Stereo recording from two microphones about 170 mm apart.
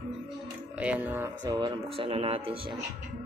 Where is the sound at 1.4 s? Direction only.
25° right (ahead or behind).